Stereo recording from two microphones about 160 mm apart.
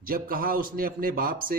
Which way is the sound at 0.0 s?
65° right (ahead or behind).